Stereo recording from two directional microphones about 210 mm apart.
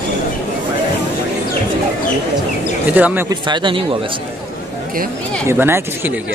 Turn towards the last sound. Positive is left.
turn(degrees=-10)  # may be behind; listen again after turning